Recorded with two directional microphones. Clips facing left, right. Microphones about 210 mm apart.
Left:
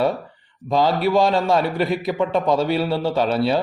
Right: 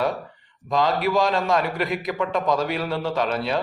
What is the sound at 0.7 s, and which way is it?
Speech, 30° left (ahead or behind).